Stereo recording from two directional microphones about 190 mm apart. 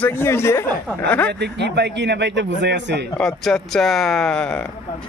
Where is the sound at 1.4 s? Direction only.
65° right (ahead or behind).